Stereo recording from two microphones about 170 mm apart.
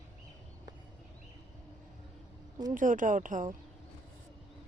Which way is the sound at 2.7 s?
50° right (ahead or behind).